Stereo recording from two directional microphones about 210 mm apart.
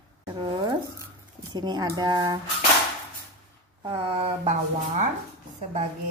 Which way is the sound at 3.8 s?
25° right (ahead or behind).